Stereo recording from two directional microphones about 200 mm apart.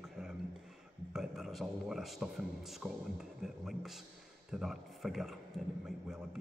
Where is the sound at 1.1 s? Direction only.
Centre (ahead or behind).